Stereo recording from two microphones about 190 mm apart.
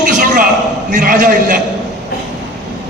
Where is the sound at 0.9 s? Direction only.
45° right (ahead or behind).